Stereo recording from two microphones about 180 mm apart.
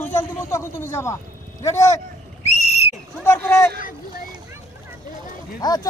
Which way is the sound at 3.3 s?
10° left (ahead or behind).